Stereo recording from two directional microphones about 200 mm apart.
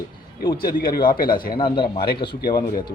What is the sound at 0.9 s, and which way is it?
Speech, 45° left (ahead or behind).